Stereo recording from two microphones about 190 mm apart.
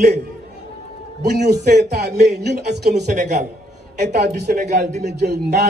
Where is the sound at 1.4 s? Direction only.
60° right (ahead or behind).